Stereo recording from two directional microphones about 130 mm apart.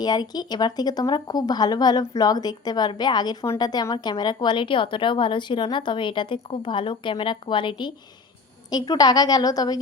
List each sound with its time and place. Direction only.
0.0 s a woman's voice: 30° left (ahead or behind)